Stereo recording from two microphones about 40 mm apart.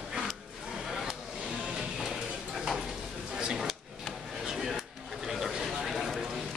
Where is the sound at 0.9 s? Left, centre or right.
Centre.